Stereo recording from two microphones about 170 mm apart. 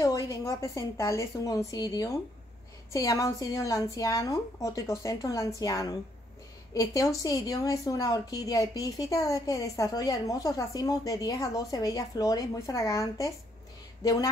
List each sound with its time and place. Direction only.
0.0 s a woman's voice: 20° left (ahead or behind)